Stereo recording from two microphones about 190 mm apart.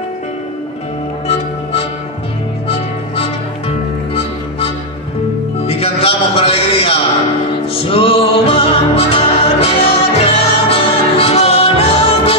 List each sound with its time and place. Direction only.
1.2 s music: 30° left (ahead or behind)
5.7 s music: 30° left (ahead or behind)